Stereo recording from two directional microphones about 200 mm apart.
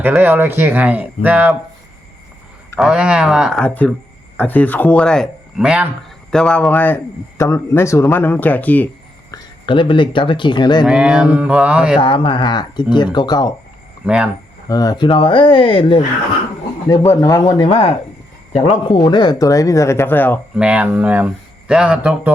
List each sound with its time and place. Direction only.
0.0 s speech: 10° right (ahead or behind)
2.7 s speech: 5° right (ahead or behind)
9.3 s speech: 25° left (ahead or behind)
10.8 s speech: 5° right (ahead or behind)
11.9 s speech: 25° left (ahead or behind)
14.0 s speech: 5° right (ahead or behind)
14.7 s speech: 20° left (ahead or behind)
16.9 s speech: 15° left (ahead or behind)
20.6 s speech: 5° right (ahead or behind)